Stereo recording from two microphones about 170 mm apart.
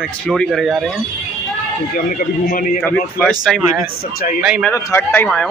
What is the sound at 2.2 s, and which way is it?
Speech, 55° left (ahead or behind).